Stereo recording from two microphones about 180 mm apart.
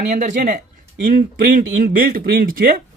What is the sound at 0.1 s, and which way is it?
Speech, 45° right (ahead or behind).